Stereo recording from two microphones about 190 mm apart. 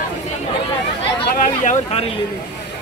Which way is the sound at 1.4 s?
35° left (ahead or behind).